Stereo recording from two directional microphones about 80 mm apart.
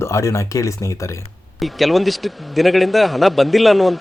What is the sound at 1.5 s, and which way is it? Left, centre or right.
A man's voice, centre.